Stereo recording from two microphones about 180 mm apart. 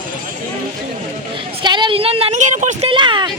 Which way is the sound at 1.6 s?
25° right (ahead or behind).